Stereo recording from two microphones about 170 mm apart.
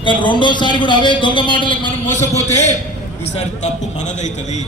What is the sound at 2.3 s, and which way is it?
A man's voice, 40° left (ahead or behind).